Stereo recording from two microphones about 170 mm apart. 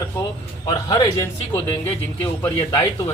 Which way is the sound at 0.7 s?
25° left (ahead or behind).